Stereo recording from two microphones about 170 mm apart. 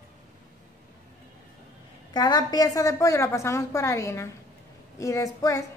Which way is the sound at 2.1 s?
25° left (ahead or behind).